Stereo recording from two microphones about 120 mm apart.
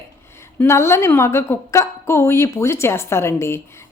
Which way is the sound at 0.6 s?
20° left (ahead or behind).